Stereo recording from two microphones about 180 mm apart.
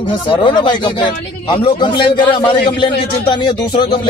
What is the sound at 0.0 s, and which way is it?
Speech, 25° left (ahead or behind).